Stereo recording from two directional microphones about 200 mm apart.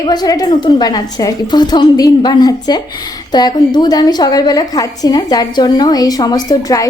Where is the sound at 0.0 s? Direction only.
20° left (ahead or behind).